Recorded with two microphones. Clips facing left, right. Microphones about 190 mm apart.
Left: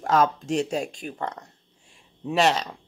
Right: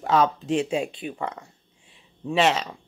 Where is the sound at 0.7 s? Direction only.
45° left (ahead or behind).